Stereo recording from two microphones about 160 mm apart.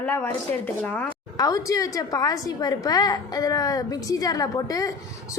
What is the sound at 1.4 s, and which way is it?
A woman's voice, 20° left (ahead or behind).